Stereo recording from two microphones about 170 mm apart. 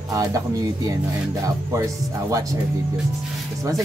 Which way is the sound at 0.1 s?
20° right (ahead or behind).